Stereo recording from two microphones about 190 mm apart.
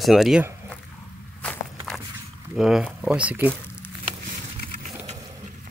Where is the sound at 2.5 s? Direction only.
5° right (ahead or behind).